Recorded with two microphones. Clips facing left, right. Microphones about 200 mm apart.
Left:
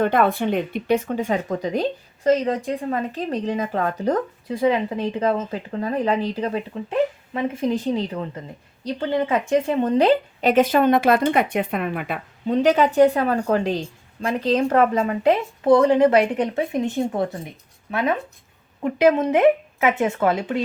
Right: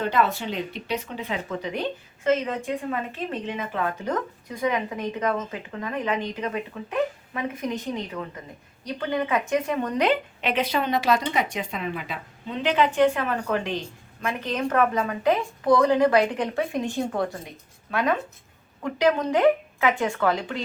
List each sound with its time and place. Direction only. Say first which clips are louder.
0.0 s a woman's voice: left 5 dB; 55° left (ahead or behind)
12.5 s a woman's voice: left 5 dB; 40° left (ahead or behind); by 20.3 s 25° left (ahead or behind)